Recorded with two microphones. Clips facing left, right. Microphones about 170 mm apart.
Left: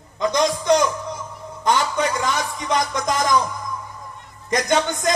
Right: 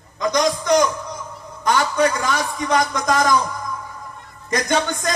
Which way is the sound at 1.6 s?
20° left (ahead or behind).